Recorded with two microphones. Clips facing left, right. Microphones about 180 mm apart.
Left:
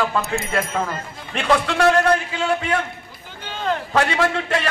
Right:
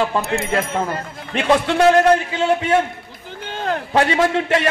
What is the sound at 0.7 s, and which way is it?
A man's voice, 20° right (ahead or behind).